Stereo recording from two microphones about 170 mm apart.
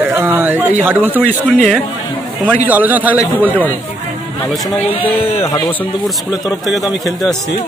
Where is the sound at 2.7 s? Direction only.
10° right (ahead or behind).